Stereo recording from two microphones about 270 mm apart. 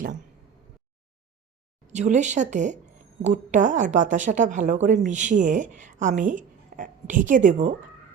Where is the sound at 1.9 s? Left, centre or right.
Right.